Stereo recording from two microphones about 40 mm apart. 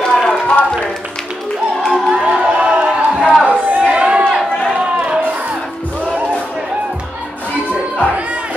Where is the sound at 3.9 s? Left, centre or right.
Right.